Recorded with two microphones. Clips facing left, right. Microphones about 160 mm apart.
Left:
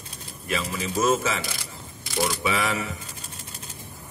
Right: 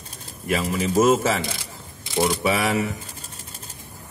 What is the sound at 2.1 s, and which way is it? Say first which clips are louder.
Speech: right 4 dB; 25° right (ahead or behind).